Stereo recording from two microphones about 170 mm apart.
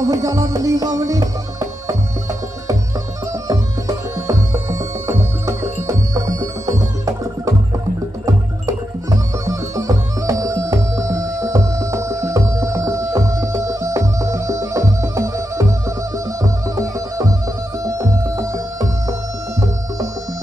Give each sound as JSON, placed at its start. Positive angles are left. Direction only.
{"t": 0.0, "sound": "music", "side_deg": -20}
{"t": 3.4, "sound": "music", "side_deg": -20}
{"t": 16.6, "sound": "music", "side_deg": -20}